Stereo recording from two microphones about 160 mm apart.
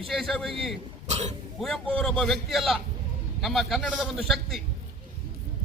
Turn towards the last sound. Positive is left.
turn(degrees=0)  # may be behind; listen again after turning